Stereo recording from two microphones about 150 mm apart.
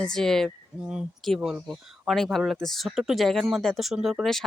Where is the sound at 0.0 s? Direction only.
5° left (ahead or behind).